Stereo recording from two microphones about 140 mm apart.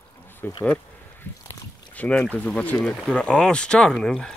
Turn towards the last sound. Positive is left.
turn(degrees=5)  # may be behind; listen again after turning